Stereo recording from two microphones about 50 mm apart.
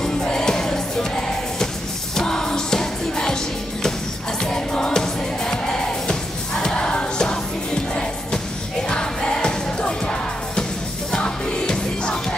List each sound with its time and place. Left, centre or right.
0.0 s music: centre
4.4 s music: centre